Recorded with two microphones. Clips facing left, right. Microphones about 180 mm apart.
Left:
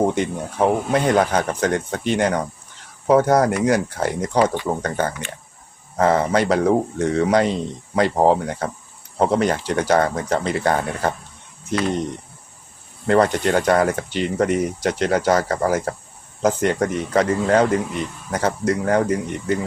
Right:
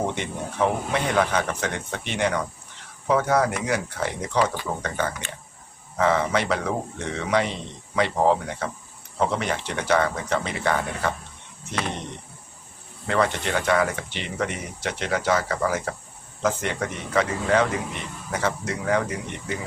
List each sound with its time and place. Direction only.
0.0 s speech: 40° left (ahead or behind)
13.1 s speech: 40° left (ahead or behind)